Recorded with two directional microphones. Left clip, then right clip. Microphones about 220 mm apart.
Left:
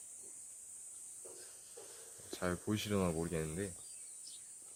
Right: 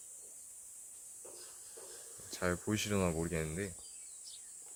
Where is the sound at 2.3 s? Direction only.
15° right (ahead or behind).